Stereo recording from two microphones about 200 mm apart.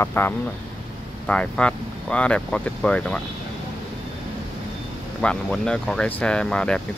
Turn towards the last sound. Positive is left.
turn(degrees=5)  # may be behind; listen again after turning